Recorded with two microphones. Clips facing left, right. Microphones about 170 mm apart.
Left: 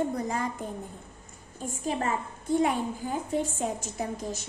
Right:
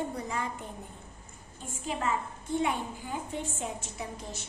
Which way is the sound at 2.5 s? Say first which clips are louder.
Left 4 dB; 40° left (ahead or behind).